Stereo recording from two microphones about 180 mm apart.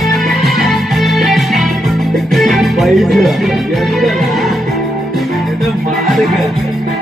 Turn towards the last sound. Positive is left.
turn(degrees=0)  # may be behind; listen again after turning